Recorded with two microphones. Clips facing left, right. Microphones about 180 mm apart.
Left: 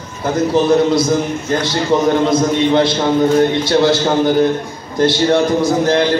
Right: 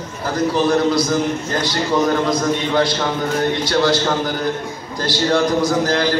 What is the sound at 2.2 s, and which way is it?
A man's voice, 25° left (ahead or behind).